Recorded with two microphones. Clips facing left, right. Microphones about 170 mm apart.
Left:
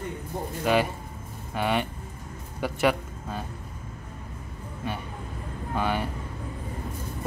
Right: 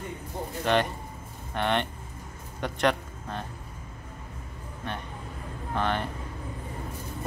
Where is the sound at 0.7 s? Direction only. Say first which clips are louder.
Left 1 dB; 5° left (ahead or behind).